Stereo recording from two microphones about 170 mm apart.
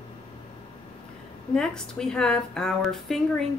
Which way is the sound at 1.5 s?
5° left (ahead or behind).